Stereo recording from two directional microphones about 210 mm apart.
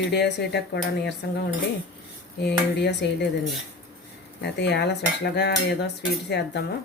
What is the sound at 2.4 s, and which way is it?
Cutlery, 55° left (ahead or behind).